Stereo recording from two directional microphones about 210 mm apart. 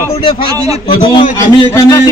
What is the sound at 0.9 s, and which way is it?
Speech, 20° left (ahead or behind).